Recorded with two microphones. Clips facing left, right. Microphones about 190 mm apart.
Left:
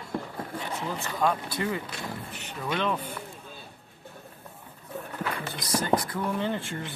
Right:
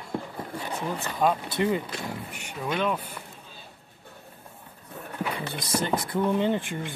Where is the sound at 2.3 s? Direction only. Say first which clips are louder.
Even; 10° right (ahead or behind).